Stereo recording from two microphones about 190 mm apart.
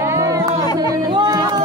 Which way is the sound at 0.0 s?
15° right (ahead or behind).